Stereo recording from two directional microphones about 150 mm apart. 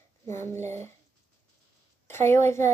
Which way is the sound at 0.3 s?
15° left (ahead or behind).